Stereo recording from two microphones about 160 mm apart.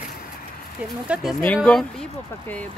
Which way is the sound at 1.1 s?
Centre (ahead or behind).